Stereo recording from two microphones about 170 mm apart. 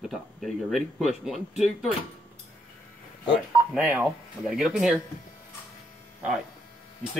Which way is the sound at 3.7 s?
5° right (ahead or behind).